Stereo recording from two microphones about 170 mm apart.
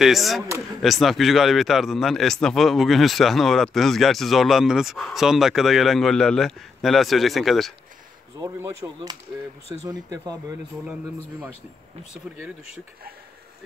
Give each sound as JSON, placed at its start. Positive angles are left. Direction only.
{"t": 0.0, "sound": "speech", "side_deg": 0}
{"t": 8.4, "sound": "speech", "side_deg": -15}